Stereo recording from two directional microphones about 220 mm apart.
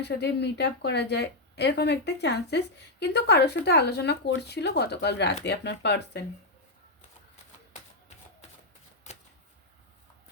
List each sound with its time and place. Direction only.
0.0 s speech: 50° left (ahead or behind)